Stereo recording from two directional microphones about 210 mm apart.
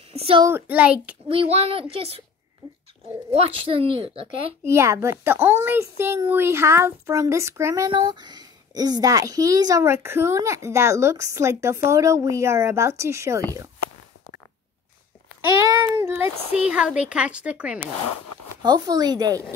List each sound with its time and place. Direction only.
0.1 s speech: 25° right (ahead or behind)
0.5 s speech: 10° right (ahead or behind)
1.3 s speech: 25° right (ahead or behind)
3.3 s speech: 25° right (ahead or behind)
4.6 s speech: 15° right (ahead or behind)
15.6 s speech: 20° right (ahead or behind)
18.6 s speech: 20° right (ahead or behind)